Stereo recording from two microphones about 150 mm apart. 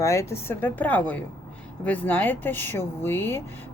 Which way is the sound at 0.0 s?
20° left (ahead or behind).